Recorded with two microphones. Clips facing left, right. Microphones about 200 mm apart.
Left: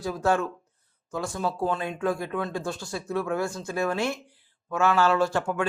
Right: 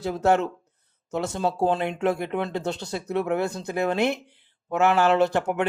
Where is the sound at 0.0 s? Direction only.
25° right (ahead or behind).